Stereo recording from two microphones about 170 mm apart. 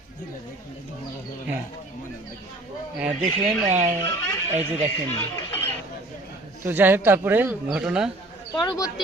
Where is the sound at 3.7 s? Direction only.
45° right (ahead or behind).